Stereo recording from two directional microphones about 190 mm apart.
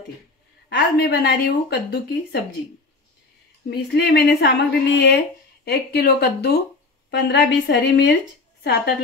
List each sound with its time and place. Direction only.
0.7 s speech: 60° left (ahead or behind)
3.9 s speech: 60° left (ahead or behind)